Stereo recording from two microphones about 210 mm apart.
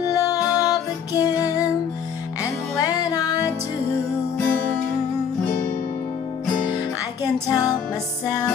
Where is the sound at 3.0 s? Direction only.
15° left (ahead or behind).